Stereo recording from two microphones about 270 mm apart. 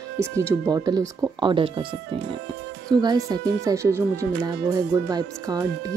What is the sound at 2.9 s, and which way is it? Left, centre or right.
Speech, centre.